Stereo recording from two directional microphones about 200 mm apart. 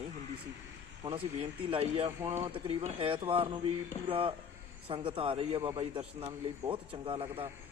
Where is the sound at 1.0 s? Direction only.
30° right (ahead or behind).